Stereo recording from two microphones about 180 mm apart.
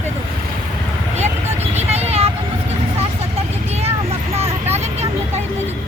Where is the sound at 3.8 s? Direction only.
35° right (ahead or behind).